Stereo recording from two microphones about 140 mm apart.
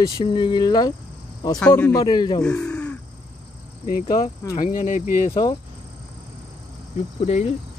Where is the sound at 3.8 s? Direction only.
90° left.